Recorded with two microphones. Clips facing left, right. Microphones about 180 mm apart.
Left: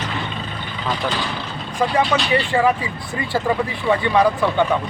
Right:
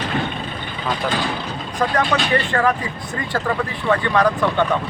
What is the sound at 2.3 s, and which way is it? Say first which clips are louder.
Speech: left 2 dB; 10° left (ahead or behind).